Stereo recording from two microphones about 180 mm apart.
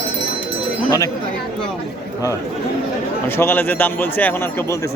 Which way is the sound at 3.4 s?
10° left (ahead or behind).